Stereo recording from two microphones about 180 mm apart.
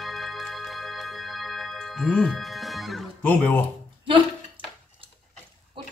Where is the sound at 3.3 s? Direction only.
10° left (ahead or behind).